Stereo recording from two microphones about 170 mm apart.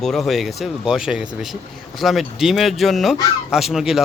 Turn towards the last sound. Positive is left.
turn(degrees=0)  # may be behind; listen again after turning